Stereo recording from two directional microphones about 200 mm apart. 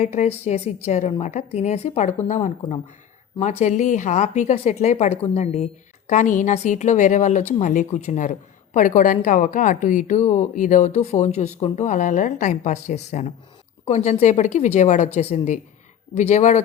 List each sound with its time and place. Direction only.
0.0 s a woman's voice: 35° left (ahead or behind)